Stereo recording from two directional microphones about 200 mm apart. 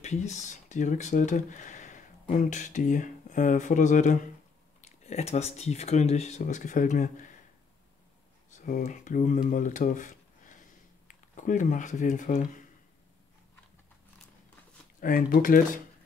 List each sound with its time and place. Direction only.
0.0 s speech: 35° left (ahead or behind)
8.5 s speech: 40° left (ahead or behind)
15.0 s speech: 45° left (ahead or behind)